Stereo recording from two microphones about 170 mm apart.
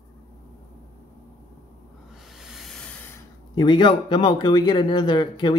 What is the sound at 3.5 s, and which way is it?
Speech, 25° left (ahead or behind).